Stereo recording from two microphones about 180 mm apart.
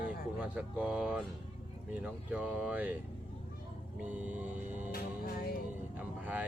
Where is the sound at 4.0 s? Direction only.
10° right (ahead or behind).